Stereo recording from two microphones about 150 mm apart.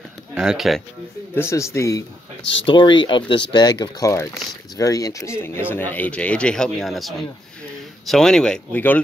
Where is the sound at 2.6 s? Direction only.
35° left (ahead or behind).